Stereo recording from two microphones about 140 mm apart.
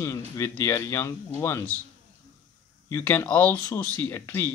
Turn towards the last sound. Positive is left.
turn(degrees=15)  # may be behind; listen again after turning